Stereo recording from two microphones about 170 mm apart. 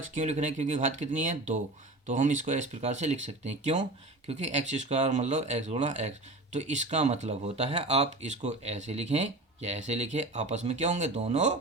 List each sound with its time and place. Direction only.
0.1 s speech: 45° right (ahead or behind)